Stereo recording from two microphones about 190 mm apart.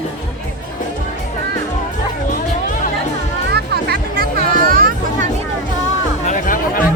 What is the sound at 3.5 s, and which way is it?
Music, 55° right (ahead or behind).